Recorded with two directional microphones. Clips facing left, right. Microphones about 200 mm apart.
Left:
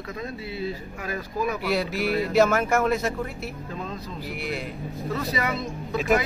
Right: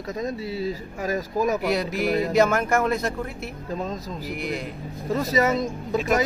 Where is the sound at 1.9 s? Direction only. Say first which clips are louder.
Right 2 dB; 45° right (ahead or behind).